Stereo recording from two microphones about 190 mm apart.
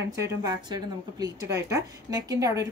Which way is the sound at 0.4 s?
20° right (ahead or behind).